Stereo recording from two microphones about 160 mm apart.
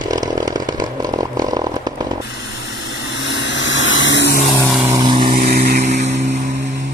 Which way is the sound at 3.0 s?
90° left.